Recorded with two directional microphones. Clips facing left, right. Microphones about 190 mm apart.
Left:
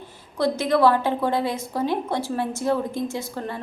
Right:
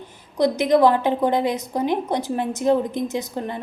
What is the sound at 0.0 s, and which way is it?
A woman's voice, 15° right (ahead or behind).